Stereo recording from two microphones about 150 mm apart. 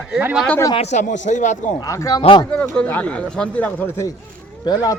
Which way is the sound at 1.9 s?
25° left (ahead or behind).